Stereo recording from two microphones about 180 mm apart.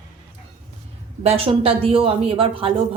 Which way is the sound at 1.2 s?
35° right (ahead or behind).